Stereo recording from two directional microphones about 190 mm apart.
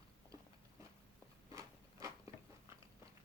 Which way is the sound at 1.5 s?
15° right (ahead or behind).